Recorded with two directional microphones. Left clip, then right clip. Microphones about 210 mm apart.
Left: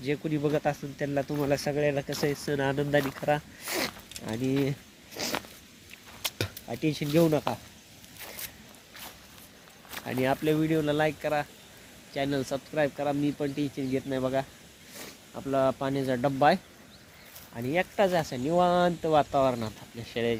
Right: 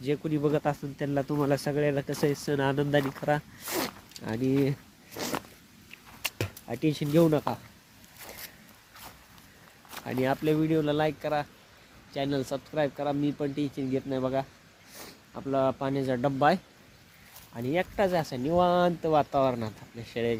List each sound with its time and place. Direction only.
0.0 s speech: 10° right (ahead or behind)
5.2 s cat: 20° right (ahead or behind)
6.2 s speech: 20° right (ahead or behind)
9.9 s speech: 5° right (ahead or behind)